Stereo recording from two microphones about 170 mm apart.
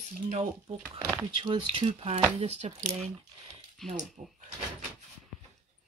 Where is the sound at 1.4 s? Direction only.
30° right (ahead or behind).